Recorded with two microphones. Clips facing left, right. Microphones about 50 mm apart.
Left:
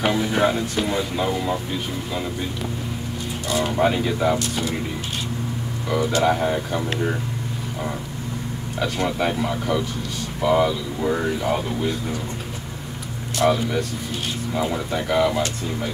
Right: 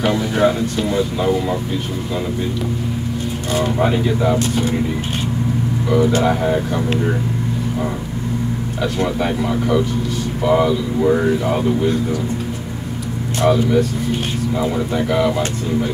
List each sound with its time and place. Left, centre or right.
0.0 s speech: centre
1.2 s speech: centre
3.7 s speech: centre
4.4 s speech: right
5.9 s speech: centre
8.8 s speech: centre
13.5 s speech: centre